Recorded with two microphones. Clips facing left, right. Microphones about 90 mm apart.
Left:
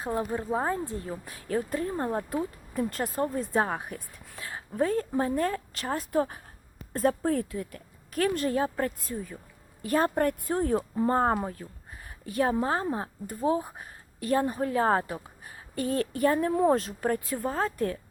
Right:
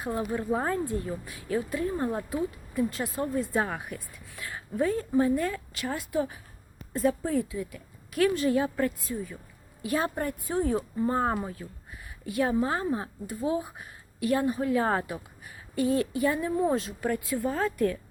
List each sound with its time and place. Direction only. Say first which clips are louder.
0.0 s speech: even; 30° left (ahead or behind)
1.2 s a woman's voice: even; 40° left (ahead or behind)